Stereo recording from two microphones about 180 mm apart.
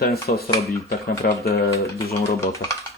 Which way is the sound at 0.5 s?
15° left (ahead or behind).